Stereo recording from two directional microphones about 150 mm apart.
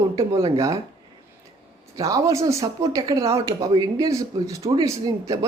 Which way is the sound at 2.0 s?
20° right (ahead or behind).